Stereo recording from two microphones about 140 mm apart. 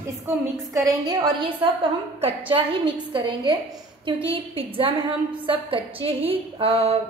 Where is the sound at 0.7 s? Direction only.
30° right (ahead or behind).